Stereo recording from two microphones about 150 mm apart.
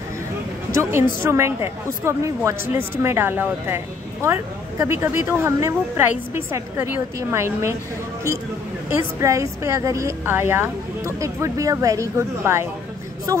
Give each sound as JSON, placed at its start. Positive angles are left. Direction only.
{"t": 0.7, "sound": "a woman's voice", "side_deg": -20}
{"t": 9.2, "sound": "a woman's voice", "side_deg": -20}